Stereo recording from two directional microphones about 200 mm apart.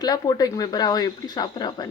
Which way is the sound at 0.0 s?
20° left (ahead or behind).